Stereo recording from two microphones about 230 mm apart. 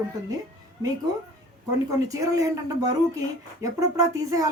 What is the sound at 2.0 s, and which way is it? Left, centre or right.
A woman's voice, centre.